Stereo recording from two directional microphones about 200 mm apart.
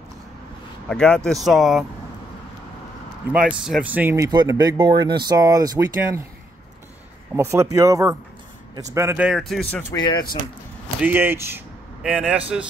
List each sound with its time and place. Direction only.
0.8 s speech: 5° left (ahead or behind)
3.3 s speech: 5° right (ahead or behind)
7.3 s speech: 15° right (ahead or behind); by 9.9 s 5° left (ahead or behind)
11.0 s speech: 10° right (ahead or behind)